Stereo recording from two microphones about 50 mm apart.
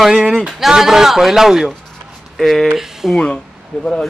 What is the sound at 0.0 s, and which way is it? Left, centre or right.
A woman's voice, centre.